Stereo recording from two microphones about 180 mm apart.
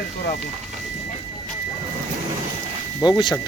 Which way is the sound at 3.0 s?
25° left (ahead or behind).